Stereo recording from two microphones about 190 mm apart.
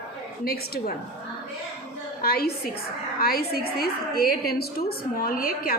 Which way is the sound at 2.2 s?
50° left (ahead or behind).